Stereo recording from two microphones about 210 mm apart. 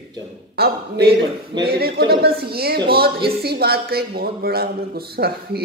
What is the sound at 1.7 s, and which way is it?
Speech, 45° right (ahead or behind).